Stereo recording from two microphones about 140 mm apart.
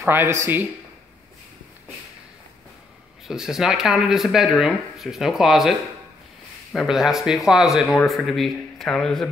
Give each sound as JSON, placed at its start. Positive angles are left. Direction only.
{"t": 0.0, "sound": "speech", "side_deg": -15}
{"t": 3.3, "sound": "speech", "side_deg": -5}